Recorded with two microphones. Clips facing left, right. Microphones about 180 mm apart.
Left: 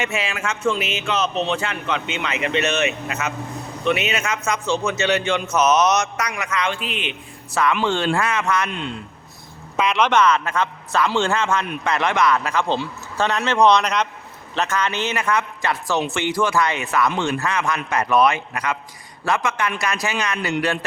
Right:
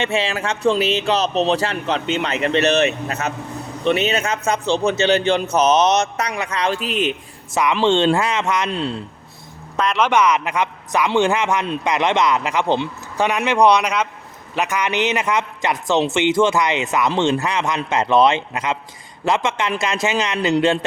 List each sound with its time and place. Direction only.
0.0 s speech: 30° right (ahead or behind)
7.5 s a man's voice: 15° right (ahead or behind)
8.7 s speech: 35° right (ahead or behind)
9.7 s speech: centre (ahead or behind)
10.1 s a man's voice: 15° right (ahead or behind)